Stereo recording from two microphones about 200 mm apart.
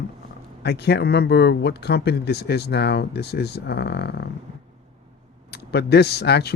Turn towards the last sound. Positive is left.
turn(degrees=55)  # may be behind; listen again after turning